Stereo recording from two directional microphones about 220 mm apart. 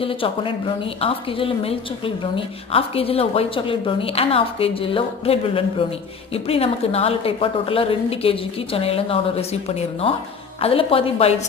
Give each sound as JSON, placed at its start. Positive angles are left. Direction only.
{"t": 0.0, "sound": "a woman's voice", "side_deg": 25}